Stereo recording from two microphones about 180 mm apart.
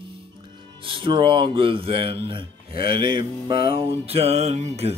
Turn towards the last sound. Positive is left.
turn(degrees=-35)  # may be behind; listen again after turning